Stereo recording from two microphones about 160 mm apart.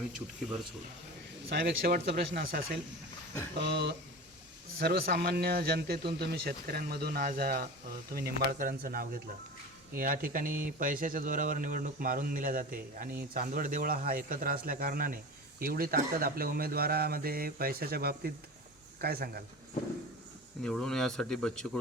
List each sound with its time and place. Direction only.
1.5 s speech: 85° right
3.6 s speech: 90° right
4.8 s a man's voice: 75° right (ahead or behind)
20.6 s speech: 5° left (ahead or behind)